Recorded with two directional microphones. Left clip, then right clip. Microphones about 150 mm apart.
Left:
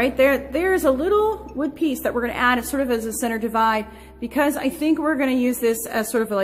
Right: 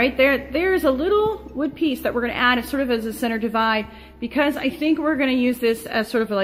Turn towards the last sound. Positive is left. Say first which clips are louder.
# even
turn(degrees=-10)  # may be behind; listen again after turning